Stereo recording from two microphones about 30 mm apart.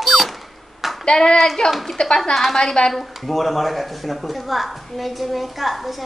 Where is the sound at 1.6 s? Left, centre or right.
Centre.